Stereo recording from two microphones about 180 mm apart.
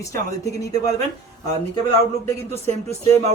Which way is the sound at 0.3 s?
20° left (ahead or behind).